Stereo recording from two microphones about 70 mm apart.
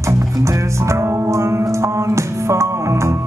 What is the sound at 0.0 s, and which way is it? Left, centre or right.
Music, right.